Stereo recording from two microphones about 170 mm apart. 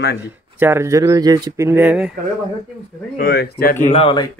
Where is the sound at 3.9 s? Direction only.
30° left (ahead or behind).